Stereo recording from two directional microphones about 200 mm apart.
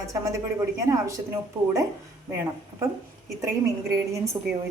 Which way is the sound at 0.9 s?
15° right (ahead or behind).